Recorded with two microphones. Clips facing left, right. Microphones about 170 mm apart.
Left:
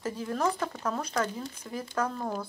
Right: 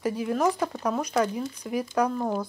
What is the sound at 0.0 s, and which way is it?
Speech, 10° right (ahead or behind).